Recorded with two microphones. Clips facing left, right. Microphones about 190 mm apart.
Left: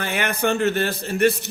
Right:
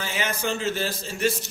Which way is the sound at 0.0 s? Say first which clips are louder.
Left 5 dB; 60° left (ahead or behind).